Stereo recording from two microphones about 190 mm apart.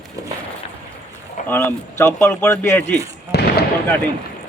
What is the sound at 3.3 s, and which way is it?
Fireworks, 60° left (ahead or behind).